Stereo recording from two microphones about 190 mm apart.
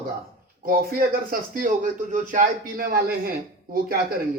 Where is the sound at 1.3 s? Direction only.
45° right (ahead or behind).